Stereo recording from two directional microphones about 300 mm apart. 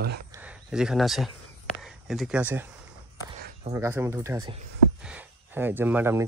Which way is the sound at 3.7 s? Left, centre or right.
Centre.